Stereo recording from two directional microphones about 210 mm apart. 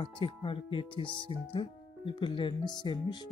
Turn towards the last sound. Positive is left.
turn(degrees=20)  # may be behind; listen again after turning